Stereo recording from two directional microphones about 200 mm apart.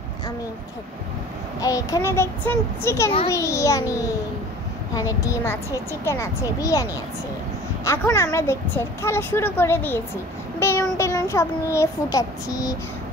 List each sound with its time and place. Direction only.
1.6 s a woman's voice: 15° left (ahead or behind)
4.9 s a woman's voice: 15° left (ahead or behind)